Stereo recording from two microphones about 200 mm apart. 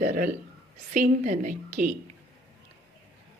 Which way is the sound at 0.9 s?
35° right (ahead or behind).